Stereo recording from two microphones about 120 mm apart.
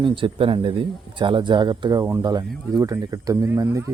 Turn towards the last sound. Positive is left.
turn(degrees=-25)  # may be behind; listen again after turning